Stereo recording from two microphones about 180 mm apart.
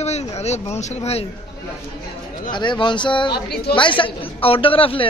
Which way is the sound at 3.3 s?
60° left (ahead or behind).